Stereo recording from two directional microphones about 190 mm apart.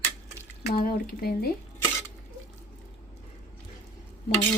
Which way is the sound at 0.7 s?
50° left (ahead or behind).